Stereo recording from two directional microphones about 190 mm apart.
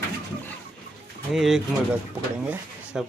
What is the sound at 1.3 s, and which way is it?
Speech, centre (ahead or behind).